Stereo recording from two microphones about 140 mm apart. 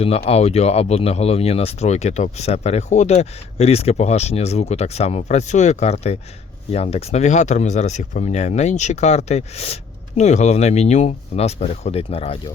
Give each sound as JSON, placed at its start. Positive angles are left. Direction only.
{"t": 0.0, "sound": "speech", "side_deg": 45}